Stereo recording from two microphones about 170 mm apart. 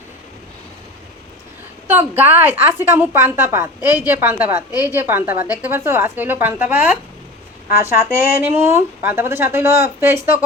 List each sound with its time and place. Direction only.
1.9 s speech: 10° right (ahead or behind)
4.7 s a woman's voice: 20° left (ahead or behind)
4.9 s speech: 10° right (ahead or behind)